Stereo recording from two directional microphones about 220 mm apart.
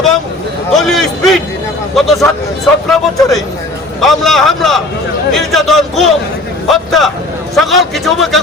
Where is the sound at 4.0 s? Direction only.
Centre (ahead or behind).